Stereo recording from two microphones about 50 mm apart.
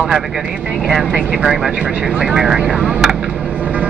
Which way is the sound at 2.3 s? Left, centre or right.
Centre.